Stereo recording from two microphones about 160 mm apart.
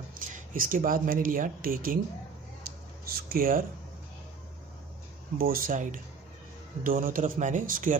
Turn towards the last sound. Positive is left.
turn(degrees=-55)  # may be behind; listen again after turning